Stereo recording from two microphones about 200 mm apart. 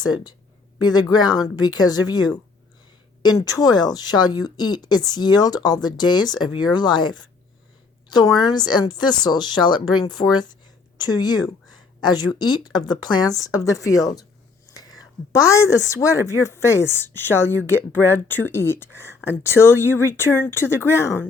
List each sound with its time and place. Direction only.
0.0 s a woman's voice: 20° left (ahead or behind)